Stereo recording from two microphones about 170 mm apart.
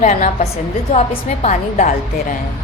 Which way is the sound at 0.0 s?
45° left (ahead or behind).